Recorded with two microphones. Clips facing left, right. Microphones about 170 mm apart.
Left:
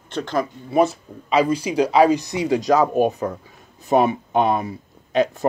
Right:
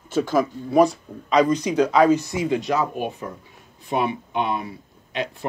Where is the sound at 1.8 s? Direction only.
30° left (ahead or behind).